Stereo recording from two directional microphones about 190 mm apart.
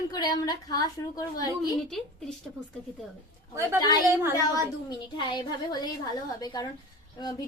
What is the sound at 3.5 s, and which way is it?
Speech, 15° right (ahead or behind).